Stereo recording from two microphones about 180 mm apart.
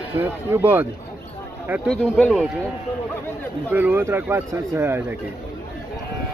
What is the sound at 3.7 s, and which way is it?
Speech, 10° right (ahead or behind).